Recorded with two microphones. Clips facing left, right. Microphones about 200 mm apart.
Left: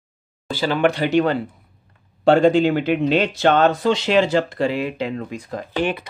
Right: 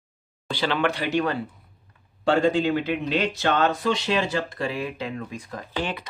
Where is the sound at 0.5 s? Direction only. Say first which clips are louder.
Left 4 dB; 5° left (ahead or behind).